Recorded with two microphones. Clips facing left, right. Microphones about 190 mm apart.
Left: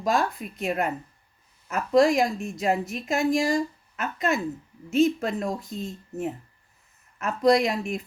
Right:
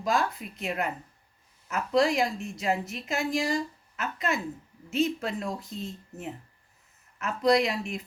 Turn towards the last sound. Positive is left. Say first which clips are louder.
# left 3 dB
turn(degrees=45)  # may be behind; listen again after turning